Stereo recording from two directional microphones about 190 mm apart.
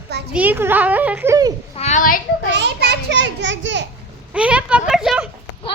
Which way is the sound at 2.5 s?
65° right (ahead or behind).